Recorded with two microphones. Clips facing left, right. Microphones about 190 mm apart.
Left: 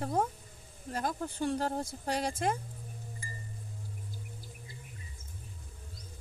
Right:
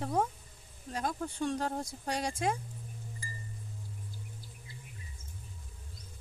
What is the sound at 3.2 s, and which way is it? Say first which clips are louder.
Wind chime: even; 35° right (ahead or behind).